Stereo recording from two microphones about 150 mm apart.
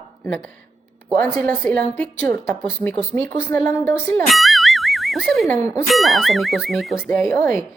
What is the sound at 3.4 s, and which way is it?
Speech, 15° left (ahead or behind).